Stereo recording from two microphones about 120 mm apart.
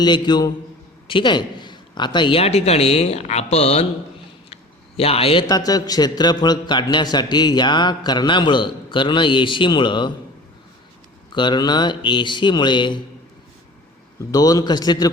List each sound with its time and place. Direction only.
0.0 s a man's voice: 35° left (ahead or behind)
2.4 s speech: 60° left (ahead or behind)
4.4 s a sound: 55° left (ahead or behind)
5.5 s a man's voice: 35° left (ahead or behind)
11.3 s a man's voice: 40° left (ahead or behind)
14.3 s a man's voice: 30° left (ahead or behind)